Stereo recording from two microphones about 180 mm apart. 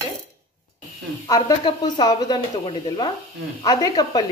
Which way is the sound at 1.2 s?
20° left (ahead or behind).